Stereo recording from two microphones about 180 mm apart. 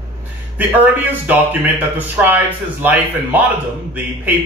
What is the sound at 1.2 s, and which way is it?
Speech, 10° right (ahead or behind).